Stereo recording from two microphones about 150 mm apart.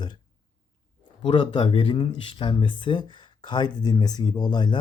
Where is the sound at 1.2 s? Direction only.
35° left (ahead or behind).